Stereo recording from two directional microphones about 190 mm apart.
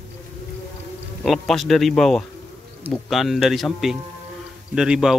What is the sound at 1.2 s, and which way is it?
Speech, centre (ahead or behind).